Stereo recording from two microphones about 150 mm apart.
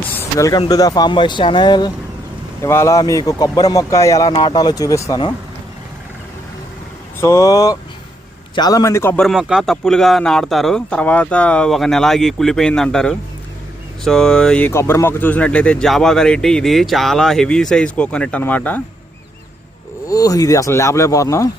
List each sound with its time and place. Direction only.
0.2 s a sound: 20° left (ahead or behind)
0.7 s speech: 25° left (ahead or behind)
2.6 s speech: 15° left (ahead or behind)
7.2 s speech: 20° left (ahead or behind)
9.1 s speech: centre (ahead or behind)
14.7 s speech: 20° left (ahead or behind)
20.1 s speech: 25° left (ahead or behind)